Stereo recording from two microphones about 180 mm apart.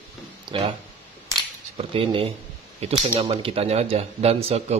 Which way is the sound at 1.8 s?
30° right (ahead or behind).